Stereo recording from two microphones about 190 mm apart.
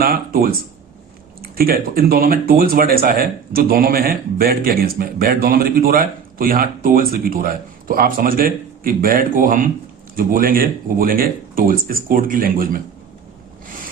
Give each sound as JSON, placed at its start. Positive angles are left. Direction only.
{"t": 0.0, "sound": "speech", "side_deg": -50}